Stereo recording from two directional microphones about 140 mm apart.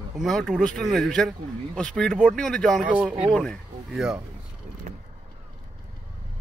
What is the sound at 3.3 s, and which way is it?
Speech, 5° left (ahead or behind).